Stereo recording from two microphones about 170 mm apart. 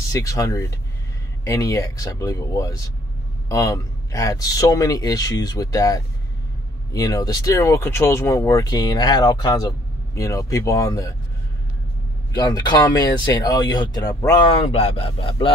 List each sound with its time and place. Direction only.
0.1 s speech: 20° left (ahead or behind)
12.3 s speech: 25° left (ahead or behind)